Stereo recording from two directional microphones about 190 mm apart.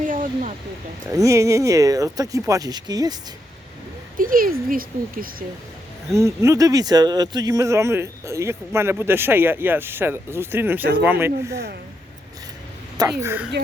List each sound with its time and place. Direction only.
0.0 s a sound: 45° right (ahead or behind)
1.1 s speech: 15° right (ahead or behind)
4.2 s speech: 45° right (ahead or behind)
6.1 s speech: 15° right (ahead or behind)
13.1 s speech: 10° right (ahead or behind)